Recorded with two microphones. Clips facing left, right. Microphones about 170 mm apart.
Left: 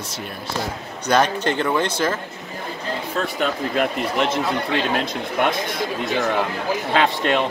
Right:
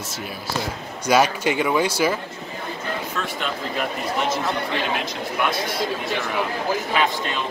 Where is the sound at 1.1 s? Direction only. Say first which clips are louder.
Even; 10° right (ahead or behind).